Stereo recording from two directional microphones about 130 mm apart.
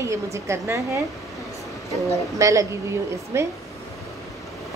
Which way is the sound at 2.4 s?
25° right (ahead or behind).